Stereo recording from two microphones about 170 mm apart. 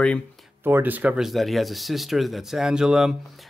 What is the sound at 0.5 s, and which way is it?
Speech, 15° right (ahead or behind).